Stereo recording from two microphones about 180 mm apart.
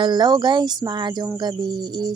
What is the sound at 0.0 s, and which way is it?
Speech, 25° right (ahead or behind).